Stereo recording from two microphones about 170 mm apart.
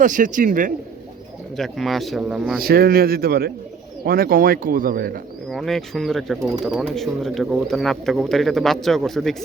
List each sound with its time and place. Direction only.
0.0 s speech: 50° right (ahead or behind)
1.5 s speech: centre (ahead or behind)
2.6 s speech: 65° right (ahead or behind)
5.5 s speech: centre (ahead or behind)